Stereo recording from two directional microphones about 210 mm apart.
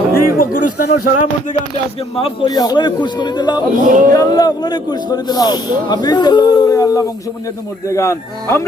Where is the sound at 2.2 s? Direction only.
25° left (ahead or behind).